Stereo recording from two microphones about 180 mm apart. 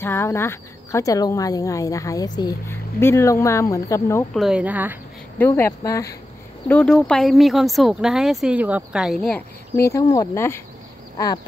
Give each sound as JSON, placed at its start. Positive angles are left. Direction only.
{"t": 0.0, "sound": "speech", "side_deg": 15}
{"t": 4.3, "sound": "speech", "side_deg": 0}
{"t": 5.4, "sound": "speech", "side_deg": 15}
{"t": 6.7, "sound": "speech", "side_deg": 5}
{"t": 9.8, "sound": "speech", "side_deg": 15}